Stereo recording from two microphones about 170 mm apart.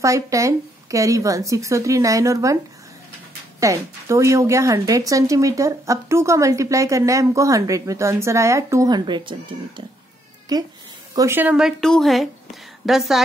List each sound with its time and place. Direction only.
0.0 s a woman's voice: 20° right (ahead or behind); by 13.2 s centre (ahead or behind)